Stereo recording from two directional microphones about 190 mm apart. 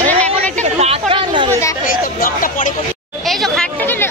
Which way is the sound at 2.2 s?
45° left (ahead or behind).